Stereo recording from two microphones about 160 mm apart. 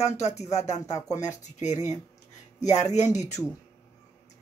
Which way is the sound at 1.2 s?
45° left (ahead or behind).